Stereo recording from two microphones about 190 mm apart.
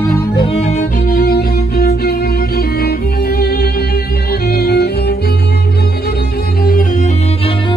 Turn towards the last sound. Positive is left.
turn(degrees=40)  # may be behind; listen again after turning